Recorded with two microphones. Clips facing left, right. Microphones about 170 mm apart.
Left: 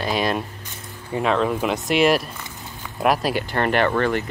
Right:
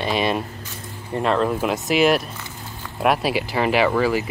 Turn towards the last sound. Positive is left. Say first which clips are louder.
# right 1 dB
turn(degrees=-5)  # may be behind; listen again after turning